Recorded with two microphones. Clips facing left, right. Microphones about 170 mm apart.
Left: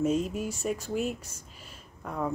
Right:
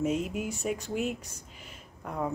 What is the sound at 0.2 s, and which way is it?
Speech, 15° right (ahead or behind).